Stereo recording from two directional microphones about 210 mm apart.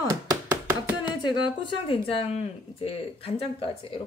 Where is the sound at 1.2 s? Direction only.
20° left (ahead or behind).